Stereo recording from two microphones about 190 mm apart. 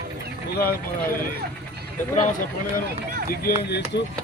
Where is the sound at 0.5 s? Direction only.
55° left (ahead or behind).